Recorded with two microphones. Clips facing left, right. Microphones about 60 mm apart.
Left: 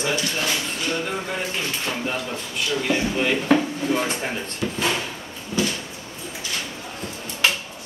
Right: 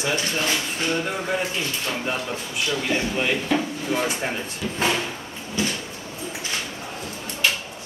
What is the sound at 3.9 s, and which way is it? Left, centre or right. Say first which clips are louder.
Speech: right 1 dB; centre.